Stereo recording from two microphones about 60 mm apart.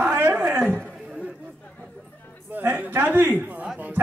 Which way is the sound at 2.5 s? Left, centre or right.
Right.